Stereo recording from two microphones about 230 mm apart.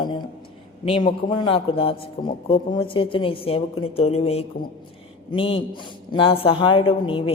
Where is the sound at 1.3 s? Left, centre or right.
Left.